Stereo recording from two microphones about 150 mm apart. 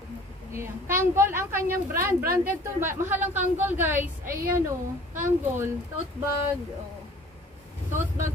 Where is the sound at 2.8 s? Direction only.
15° right (ahead or behind).